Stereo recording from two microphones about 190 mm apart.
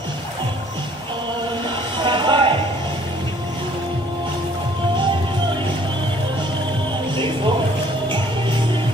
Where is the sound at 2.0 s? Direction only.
25° right (ahead or behind).